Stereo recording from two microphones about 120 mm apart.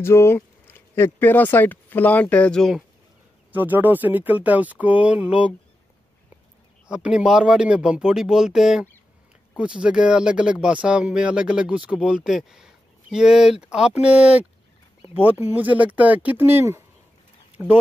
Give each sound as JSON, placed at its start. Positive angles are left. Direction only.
{"t": 0.0, "sound": "speech", "side_deg": 20}
{"t": 3.5, "sound": "speech", "side_deg": -15}
{"t": 6.9, "sound": "speech", "side_deg": -10}